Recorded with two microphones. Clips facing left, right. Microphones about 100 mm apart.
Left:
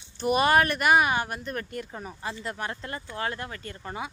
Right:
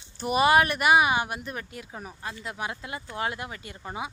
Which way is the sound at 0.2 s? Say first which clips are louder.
Right 1 dB; 5° right (ahead or behind).